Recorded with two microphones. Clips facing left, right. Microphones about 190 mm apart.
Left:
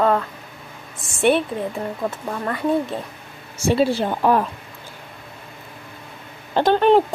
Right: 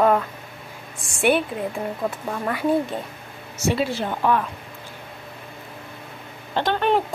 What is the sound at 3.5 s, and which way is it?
Speech, 30° left (ahead or behind).